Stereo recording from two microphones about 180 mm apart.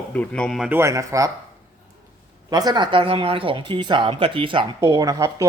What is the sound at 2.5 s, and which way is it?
Speech, 20° right (ahead or behind).